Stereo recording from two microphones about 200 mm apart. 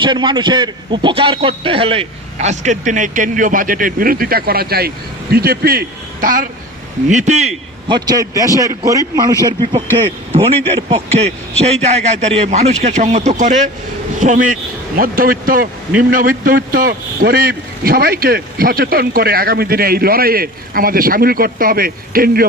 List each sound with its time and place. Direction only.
0.0 s a man's voice: 25° right (ahead or behind)
7.9 s a man's voice: 20° right (ahead or behind); by 22.4 s 45° right (ahead or behind)